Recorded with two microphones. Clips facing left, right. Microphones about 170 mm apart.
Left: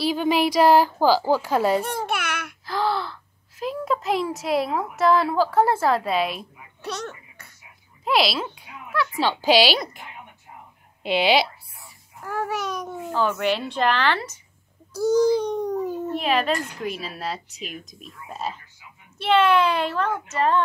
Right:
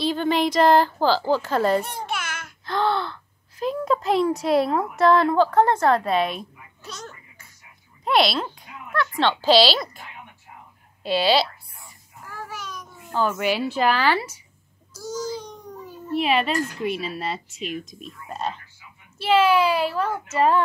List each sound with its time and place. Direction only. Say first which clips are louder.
0.0 s a woman's voice: left 1 dB; 10° left (ahead or behind)
1.9 s babbling: left 4 dB; 60° left (ahead or behind)
2.6 s speech: right 2 dB; 5° left (ahead or behind)
6.8 s baby laughter: left 7 dB; 65° left (ahead or behind)
8.0 s speech: right 1 dB; centre (ahead or behind)
8.5 s a sound: even; centre (ahead or behind)
9.3 s a woman's voice: right 1 dB; 15° left (ahead or behind)
11.0 s a sound: even; 20° left (ahead or behind)
12.3 s babbling: left 9 dB; 65° left (ahead or behind)
13.1 s speech: even; centre (ahead or behind)
15.0 s a sound: left 12 dB; 60° left (ahead or behind)
16.1 s speech: right 3 dB; centre (ahead or behind)